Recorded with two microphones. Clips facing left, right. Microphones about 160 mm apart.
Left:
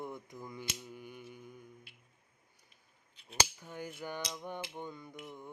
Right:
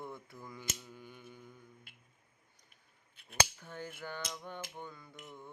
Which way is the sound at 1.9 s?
50° right (ahead or behind).